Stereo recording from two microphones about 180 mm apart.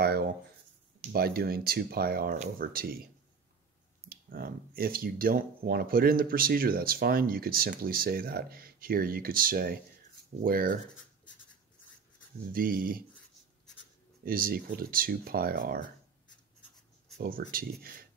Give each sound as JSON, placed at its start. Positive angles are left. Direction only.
{"t": 0.0, "sound": "writing", "side_deg": -60}
{"t": 1.1, "sound": "speech", "side_deg": -60}
{"t": 2.3, "sound": "speech", "side_deg": -40}
{"t": 2.7, "sound": "speech", "side_deg": -55}
{"t": 4.1, "sound": "speech", "side_deg": -50}
{"t": 12.5, "sound": "speech", "side_deg": -50}
{"t": 14.2, "sound": "speech", "side_deg": -55}
{"t": 17.2, "sound": "speech", "side_deg": -55}